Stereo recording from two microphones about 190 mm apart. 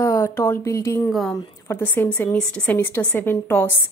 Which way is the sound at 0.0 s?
15° left (ahead or behind).